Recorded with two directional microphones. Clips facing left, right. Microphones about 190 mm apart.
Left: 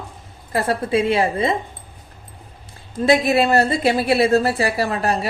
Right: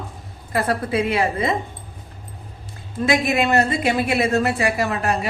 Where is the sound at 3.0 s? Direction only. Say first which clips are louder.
Left 3 dB; 35° left (ahead or behind).